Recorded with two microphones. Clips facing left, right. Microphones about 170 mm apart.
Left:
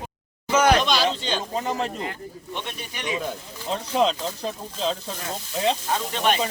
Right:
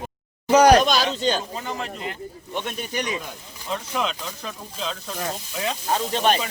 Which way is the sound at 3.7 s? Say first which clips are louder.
Left 5 dB; 30° left (ahead or behind).